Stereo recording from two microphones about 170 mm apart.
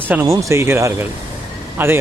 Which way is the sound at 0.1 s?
15° right (ahead or behind).